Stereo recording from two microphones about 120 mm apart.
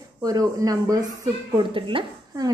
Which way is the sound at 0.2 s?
30° right (ahead or behind).